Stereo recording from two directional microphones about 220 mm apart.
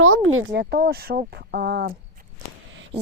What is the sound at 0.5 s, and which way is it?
Speech, 45° right (ahead or behind).